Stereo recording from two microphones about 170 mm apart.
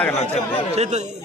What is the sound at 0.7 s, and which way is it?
Speech, 40° right (ahead or behind).